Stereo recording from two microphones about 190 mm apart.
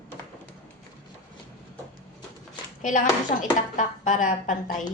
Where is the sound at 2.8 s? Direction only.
40° left (ahead or behind).